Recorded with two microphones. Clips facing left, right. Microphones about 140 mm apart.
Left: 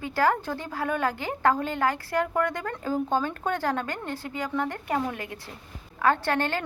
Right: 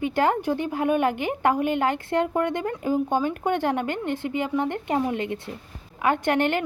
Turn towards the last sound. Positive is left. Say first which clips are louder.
# right 4 dB
turn(degrees=-20)  # may be behind; listen again after turning